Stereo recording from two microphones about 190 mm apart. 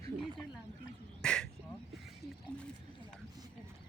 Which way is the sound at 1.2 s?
5° left (ahead or behind).